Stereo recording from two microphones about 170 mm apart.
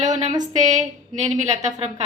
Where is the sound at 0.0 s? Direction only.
40° right (ahead or behind).